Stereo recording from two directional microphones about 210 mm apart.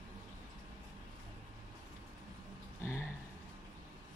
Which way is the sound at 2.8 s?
10° left (ahead or behind).